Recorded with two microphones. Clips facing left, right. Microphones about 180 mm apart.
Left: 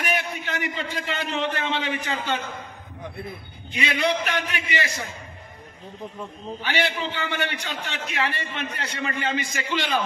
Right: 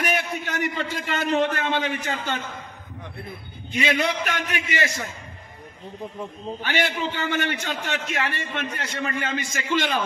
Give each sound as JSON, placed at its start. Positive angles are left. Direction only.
{"t": 0.0, "sound": "a man's voice", "side_deg": -45}
{"t": 3.7, "sound": "a man's voice", "side_deg": -45}
{"t": 6.6, "sound": "a man's voice", "side_deg": -45}